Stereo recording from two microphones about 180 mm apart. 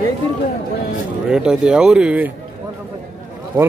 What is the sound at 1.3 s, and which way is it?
Speech, 5° right (ahead or behind).